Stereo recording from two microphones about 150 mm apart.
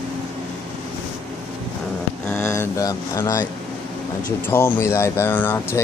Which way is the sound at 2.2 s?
15° left (ahead or behind).